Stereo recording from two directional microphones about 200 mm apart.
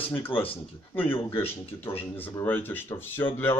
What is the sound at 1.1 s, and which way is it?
Speech, 10° left (ahead or behind).